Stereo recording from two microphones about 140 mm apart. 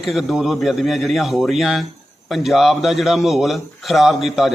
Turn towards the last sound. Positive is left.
turn(degrees=0)  # may be behind; listen again after turning